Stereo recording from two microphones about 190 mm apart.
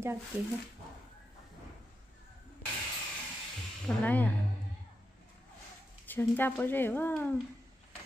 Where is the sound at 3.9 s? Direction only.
5° left (ahead or behind).